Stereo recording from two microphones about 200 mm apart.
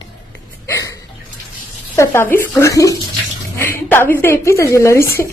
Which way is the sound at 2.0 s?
10° left (ahead or behind).